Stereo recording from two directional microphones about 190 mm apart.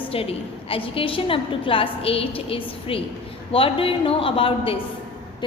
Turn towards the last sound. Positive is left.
turn(degrees=25)  # may be behind; listen again after turning